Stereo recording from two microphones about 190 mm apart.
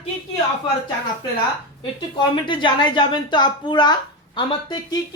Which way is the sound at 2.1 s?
25° left (ahead or behind).